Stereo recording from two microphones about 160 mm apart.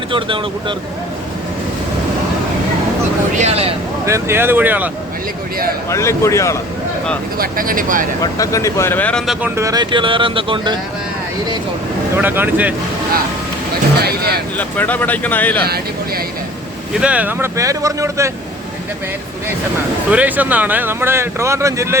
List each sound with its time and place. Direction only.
3.3 s speech: 45° right (ahead or behind)
4.0 s speech: 15° right (ahead or behind)
5.9 s speech: 15° left (ahead or behind)
7.3 s speech: 65° right (ahead or behind)
8.2 s speech: 20° left (ahead or behind)
9.2 s speech: 5° right (ahead or behind)
9.6 s speech: 25° right (ahead or behind)
12.1 s speech: 15° right (ahead or behind)
14.0 s speech: 80° right
14.6 s speech: 10° left (ahead or behind)
15.6 s speech: 75° right (ahead or behind)
17.0 s speech: 10° right (ahead or behind)
20.1 s speech: 10° right (ahead or behind)